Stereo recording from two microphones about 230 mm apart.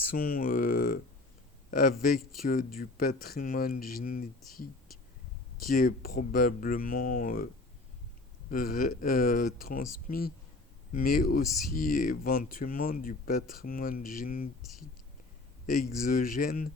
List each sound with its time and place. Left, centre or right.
0.1 s speech: left
5.7 s speech: left
8.4 s speech: left
15.6 s speech: left